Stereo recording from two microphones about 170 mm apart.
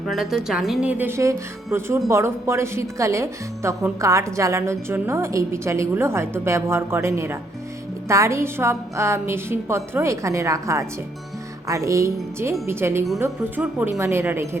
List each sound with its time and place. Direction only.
0.0 s a woman's voice: centre (ahead or behind)